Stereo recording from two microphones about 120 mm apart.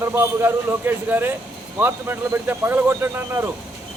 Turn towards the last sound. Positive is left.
turn(degrees=-20)  # may be behind; listen again after turning